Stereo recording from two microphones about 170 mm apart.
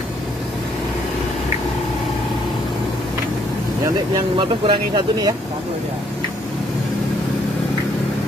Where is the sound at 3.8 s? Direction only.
30° right (ahead or behind).